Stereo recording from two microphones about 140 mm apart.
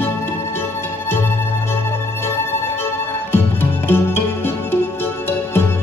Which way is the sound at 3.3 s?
15° left (ahead or behind).